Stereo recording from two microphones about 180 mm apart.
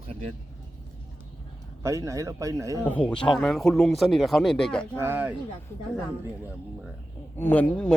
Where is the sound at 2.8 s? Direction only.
10° left (ahead or behind).